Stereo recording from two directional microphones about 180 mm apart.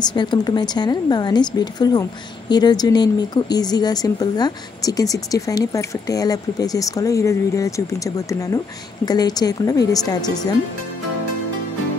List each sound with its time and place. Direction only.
0.1 s speech: 25° left (ahead or behind)